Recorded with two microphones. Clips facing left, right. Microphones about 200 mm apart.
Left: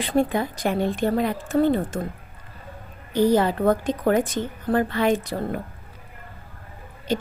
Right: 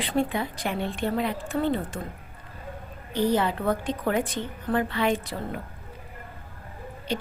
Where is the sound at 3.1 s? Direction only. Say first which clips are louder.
Left 5 dB; 40° left (ahead or behind).